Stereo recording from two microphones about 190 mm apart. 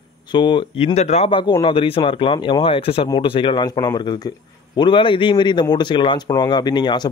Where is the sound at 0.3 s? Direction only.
25° left (ahead or behind).